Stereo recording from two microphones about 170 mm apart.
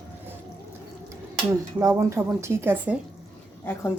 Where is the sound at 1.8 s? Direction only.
15° right (ahead or behind).